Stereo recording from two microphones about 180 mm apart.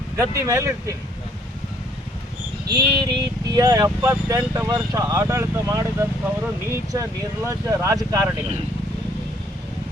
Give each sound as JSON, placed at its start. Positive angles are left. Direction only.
{"t": 0.2, "sound": "speech", "side_deg": -15}
{"t": 2.6, "sound": "speech", "side_deg": -20}